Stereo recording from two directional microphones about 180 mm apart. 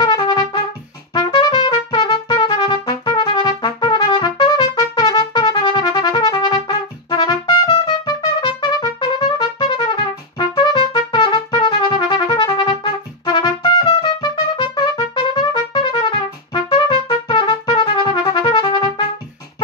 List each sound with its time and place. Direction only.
0.0 s trumpet: 25° left (ahead or behind)
15.7 s music: 25° left (ahead or behind)